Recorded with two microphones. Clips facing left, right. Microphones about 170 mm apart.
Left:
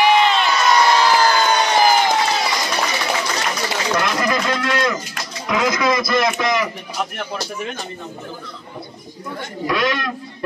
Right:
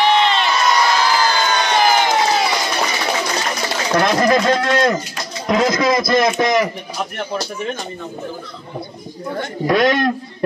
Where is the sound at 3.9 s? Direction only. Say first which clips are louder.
Right 7 dB; 35° right (ahead or behind).